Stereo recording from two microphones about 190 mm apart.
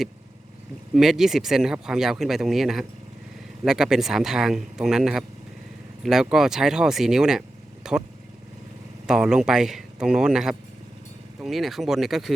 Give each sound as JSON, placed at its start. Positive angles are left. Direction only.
{"t": 0.9, "sound": "speech", "side_deg": 0}
{"t": 9.0, "sound": "speech", "side_deg": -5}